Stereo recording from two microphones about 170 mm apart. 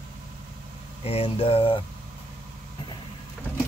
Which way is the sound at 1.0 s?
35° left (ahead or behind).